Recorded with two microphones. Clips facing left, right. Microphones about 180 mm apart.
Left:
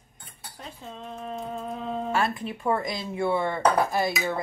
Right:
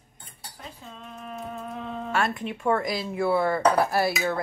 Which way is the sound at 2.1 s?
Centre (ahead or behind).